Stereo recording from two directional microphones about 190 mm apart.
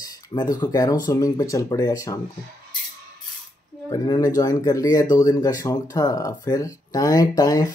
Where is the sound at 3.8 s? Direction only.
20° left (ahead or behind).